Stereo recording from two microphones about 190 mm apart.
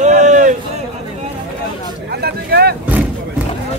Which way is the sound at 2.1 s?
55° right (ahead or behind).